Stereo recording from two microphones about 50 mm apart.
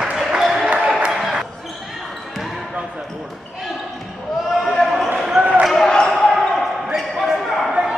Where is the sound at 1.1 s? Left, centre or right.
Centre.